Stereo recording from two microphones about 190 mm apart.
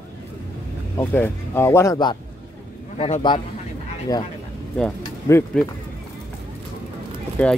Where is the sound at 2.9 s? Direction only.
35° left (ahead or behind); by 4.2 s 20° left (ahead or behind).